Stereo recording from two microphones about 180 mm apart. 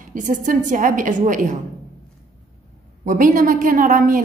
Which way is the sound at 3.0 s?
50° right (ahead or behind).